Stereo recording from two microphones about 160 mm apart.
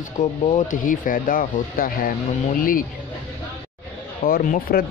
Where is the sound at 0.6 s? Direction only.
55° left (ahead or behind).